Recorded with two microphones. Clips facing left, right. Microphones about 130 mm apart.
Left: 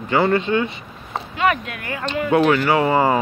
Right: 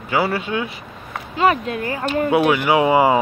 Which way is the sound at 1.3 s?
30° right (ahead or behind).